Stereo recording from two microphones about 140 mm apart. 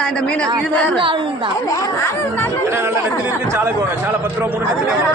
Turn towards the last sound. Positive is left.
turn(degrees=-20)  # may be behind; listen again after turning